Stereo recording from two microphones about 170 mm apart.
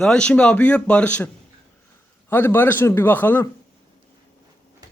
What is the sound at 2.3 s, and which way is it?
Speech, 10° left (ahead or behind).